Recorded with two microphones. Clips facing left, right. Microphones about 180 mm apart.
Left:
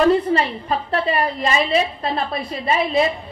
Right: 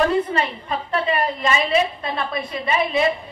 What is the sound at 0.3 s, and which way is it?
Speech, 35° left (ahead or behind).